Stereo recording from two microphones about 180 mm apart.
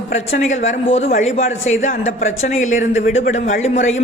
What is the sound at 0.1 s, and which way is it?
A man's voice, 40° left (ahead or behind).